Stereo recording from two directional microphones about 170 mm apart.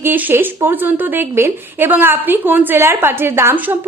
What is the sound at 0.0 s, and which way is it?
A woman's voice, 10° right (ahead or behind).